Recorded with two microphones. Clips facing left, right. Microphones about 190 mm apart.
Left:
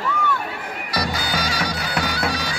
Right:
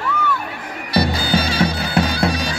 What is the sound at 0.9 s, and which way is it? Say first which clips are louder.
Bagpipes: right 7 dB; 25° right (ahead or behind).